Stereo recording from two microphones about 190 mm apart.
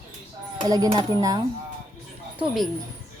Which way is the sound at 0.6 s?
20° right (ahead or behind).